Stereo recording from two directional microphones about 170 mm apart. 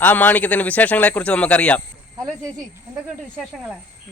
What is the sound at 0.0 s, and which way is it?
Speech, 10° left (ahead or behind).